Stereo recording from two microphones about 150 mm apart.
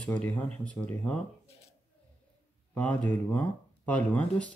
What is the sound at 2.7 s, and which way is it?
Speech, 10° left (ahead or behind).